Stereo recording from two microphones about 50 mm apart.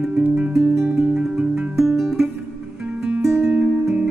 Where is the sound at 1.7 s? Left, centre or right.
Centre.